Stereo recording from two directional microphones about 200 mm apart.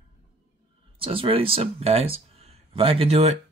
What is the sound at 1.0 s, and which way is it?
Speech, 25° right (ahead or behind).